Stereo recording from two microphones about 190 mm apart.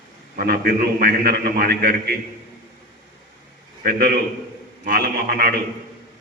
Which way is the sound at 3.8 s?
55° right (ahead or behind).